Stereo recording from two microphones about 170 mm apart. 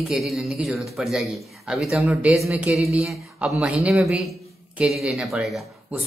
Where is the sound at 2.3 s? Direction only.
15° right (ahead or behind).